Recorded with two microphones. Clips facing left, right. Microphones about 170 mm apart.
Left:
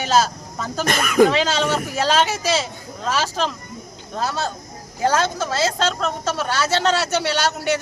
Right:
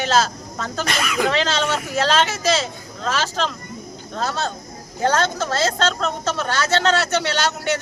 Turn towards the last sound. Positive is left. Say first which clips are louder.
# left 1 dB
turn(degrees=10)  # may be behind; listen again after turning